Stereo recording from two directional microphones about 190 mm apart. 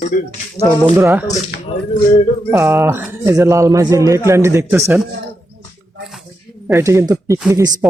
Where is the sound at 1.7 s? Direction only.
30° left (ahead or behind).